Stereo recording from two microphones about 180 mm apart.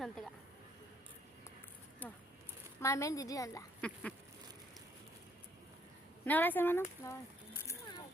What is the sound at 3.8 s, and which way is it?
Speech, 5° left (ahead or behind).